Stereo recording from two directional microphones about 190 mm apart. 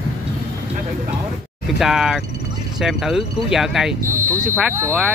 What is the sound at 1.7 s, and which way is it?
Speech, centre (ahead or behind).